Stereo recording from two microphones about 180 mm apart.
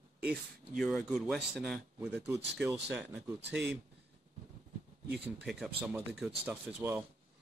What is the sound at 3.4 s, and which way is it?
Speech, 70° right (ahead or behind).